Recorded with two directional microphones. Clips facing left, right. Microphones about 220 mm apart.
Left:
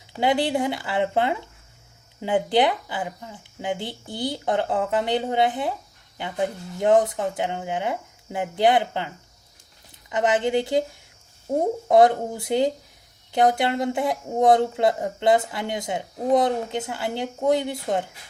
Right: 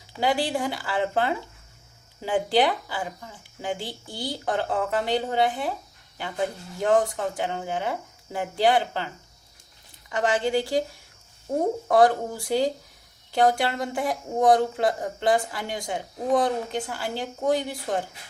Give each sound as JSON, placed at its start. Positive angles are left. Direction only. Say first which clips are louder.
{"t": 0.2, "sound": "speech", "louder": "left 3 dB", "side_deg": 20}
{"t": 10.1, "sound": "speech", "louder": "left 2 dB", "side_deg": 20}
{"t": 11.9, "sound": "speech", "louder": "left 3 dB", "side_deg": 20}